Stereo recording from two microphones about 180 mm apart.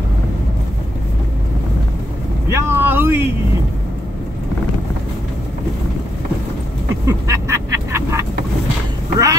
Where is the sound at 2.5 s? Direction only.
15° right (ahead or behind).